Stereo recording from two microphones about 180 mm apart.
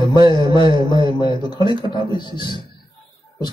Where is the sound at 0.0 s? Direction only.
25° left (ahead or behind).